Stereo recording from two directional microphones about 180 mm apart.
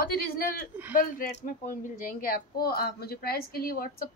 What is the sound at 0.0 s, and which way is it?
A woman's voice, 55° left (ahead or behind).